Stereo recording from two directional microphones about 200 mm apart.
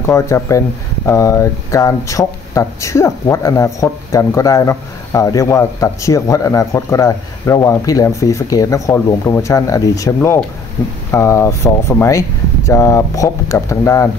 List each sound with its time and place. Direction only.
0.0 s speech: 15° left (ahead or behind)